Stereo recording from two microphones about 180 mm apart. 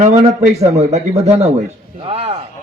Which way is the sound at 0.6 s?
35° right (ahead or behind).